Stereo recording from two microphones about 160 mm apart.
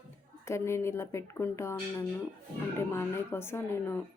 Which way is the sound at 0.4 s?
15° left (ahead or behind).